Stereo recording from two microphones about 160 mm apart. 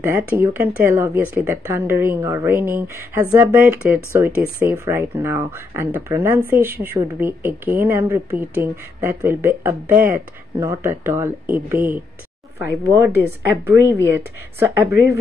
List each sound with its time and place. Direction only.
0.0 s speech: 15° right (ahead or behind)